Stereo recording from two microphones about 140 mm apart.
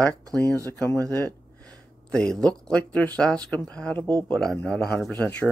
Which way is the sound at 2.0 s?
5° left (ahead or behind).